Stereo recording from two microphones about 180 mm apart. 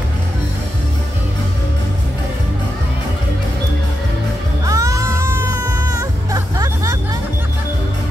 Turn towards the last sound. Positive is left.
turn(degrees=-20)  # may be behind; listen again after turning